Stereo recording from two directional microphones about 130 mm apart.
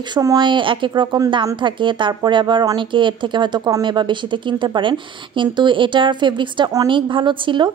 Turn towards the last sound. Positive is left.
turn(degrees=-40)  # may be behind; listen again after turning